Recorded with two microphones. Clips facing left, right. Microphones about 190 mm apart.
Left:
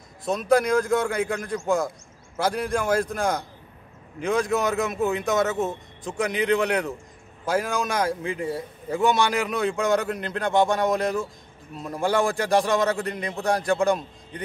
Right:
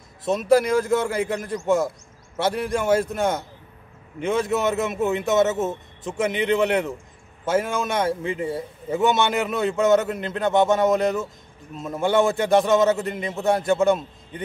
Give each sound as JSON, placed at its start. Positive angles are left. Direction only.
{"t": 0.3, "sound": "a man's voice", "side_deg": -5}
{"t": 5.2, "sound": "speech", "side_deg": -25}
{"t": 6.1, "sound": "a man's voice", "side_deg": -5}
{"t": 8.5, "sound": "speech", "side_deg": -25}
{"t": 8.9, "sound": "a man's voice", "side_deg": 0}